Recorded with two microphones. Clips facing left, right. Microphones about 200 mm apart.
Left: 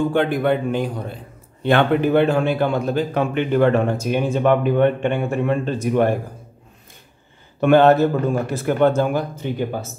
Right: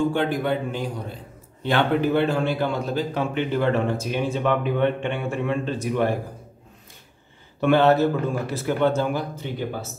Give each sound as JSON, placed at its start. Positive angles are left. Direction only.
{"t": 0.1, "sound": "a man's voice", "side_deg": 60}
{"t": 7.6, "sound": "a man's voice", "side_deg": 50}